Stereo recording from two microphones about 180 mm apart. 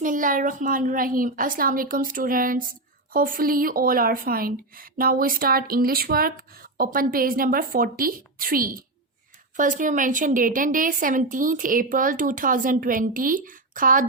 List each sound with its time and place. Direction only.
0.0 s speech: 45° right (ahead or behind)